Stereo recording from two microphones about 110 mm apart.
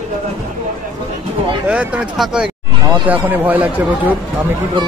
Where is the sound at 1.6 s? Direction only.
10° right (ahead or behind).